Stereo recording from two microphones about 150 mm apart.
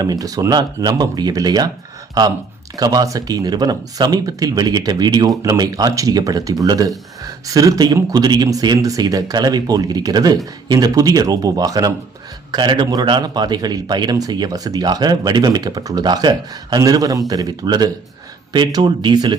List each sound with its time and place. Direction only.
0.0 s a man's voice: 25° right (ahead or behind)
2.7 s a man's voice: 25° right (ahead or behind)